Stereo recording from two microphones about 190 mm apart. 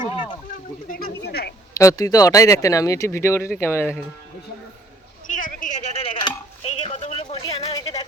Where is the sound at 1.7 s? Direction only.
15° left (ahead or behind).